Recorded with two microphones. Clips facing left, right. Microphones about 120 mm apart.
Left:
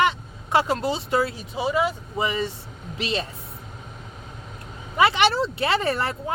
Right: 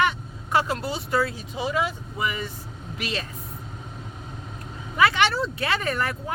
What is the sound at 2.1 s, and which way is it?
Speech, 30° left (ahead or behind).